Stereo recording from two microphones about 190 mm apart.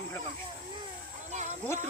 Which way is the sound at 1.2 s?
40° right (ahead or behind).